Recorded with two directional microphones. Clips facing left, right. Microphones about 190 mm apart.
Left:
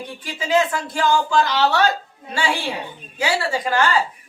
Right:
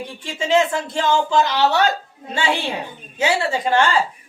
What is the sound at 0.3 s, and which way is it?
Speech, 25° right (ahead or behind).